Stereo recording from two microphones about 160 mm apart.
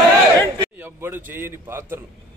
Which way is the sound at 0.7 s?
15° right (ahead or behind).